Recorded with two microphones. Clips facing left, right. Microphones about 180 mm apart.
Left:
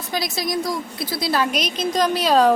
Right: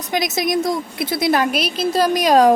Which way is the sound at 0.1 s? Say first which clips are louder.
Right 5 dB; 20° right (ahead or behind).